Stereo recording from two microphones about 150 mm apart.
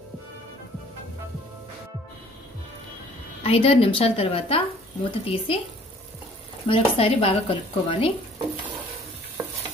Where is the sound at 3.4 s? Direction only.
40° left (ahead or behind).